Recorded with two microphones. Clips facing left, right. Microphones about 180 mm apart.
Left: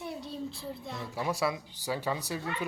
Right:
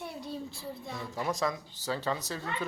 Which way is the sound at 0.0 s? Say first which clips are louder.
Left 1 dB; centre (ahead or behind).